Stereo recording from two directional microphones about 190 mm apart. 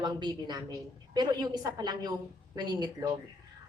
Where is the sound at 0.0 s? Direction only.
25° right (ahead or behind).